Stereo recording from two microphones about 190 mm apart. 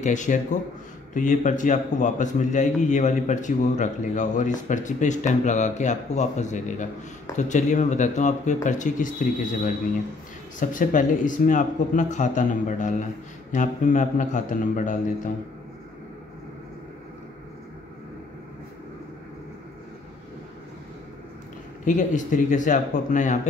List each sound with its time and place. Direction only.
0.0 s a man's voice: 40° left (ahead or behind)
10.6 s a man's voice: 45° left (ahead or behind)
21.8 s a man's voice: 40° left (ahead or behind)